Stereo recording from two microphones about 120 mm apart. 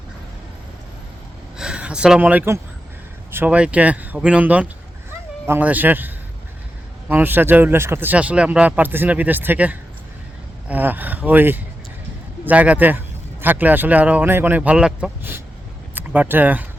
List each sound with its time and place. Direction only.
1.5 s speech: 5° right (ahead or behind)
7.1 s speech: 15° right (ahead or behind)